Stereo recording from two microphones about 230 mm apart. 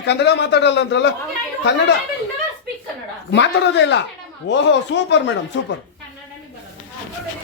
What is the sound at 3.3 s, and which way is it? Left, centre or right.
Speech, left.